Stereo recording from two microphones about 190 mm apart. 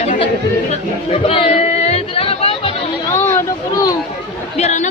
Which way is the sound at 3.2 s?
15° left (ahead or behind).